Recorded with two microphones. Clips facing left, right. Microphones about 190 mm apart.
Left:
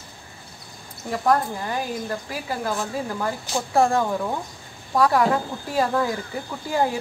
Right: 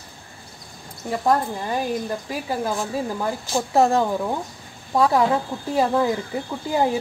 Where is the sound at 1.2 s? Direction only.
20° right (ahead or behind).